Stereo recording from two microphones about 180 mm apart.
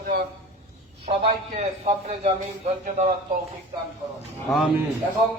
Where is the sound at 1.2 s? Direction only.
40° right (ahead or behind).